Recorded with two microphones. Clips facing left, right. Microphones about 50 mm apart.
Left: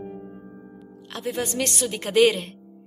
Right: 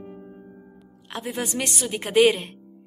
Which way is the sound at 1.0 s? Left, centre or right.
Centre.